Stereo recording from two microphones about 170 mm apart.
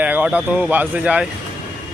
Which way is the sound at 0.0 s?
10° right (ahead or behind).